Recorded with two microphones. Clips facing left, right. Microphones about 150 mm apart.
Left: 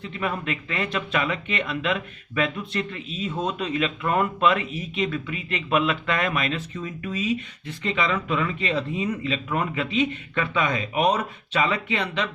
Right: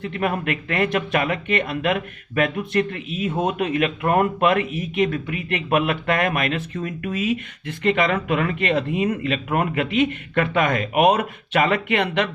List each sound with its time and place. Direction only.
0.0 s speech: 55° right (ahead or behind)